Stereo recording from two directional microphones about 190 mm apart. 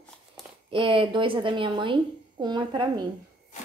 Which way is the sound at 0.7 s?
25° right (ahead or behind).